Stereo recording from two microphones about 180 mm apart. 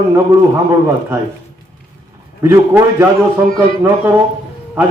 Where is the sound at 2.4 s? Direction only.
15° right (ahead or behind).